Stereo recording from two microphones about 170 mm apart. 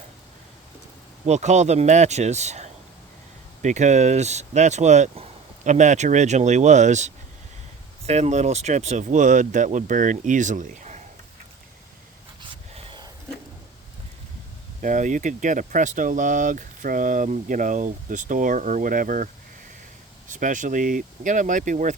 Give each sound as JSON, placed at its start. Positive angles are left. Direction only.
{"t": 1.2, "sound": "speech", "side_deg": -45}
{"t": 12.7, "sound": "a sound", "side_deg": -30}
{"t": 14.8, "sound": "speech", "side_deg": -45}